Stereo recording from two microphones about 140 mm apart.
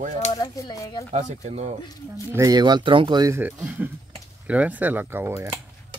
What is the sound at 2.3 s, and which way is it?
Speech, 25° right (ahead or behind).